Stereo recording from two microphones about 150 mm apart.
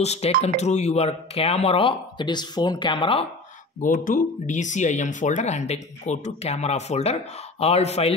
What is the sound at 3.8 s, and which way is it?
Speech, 60° left (ahead or behind).